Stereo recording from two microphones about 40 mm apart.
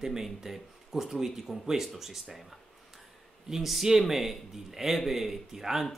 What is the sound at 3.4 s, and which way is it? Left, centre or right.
Speech, centre.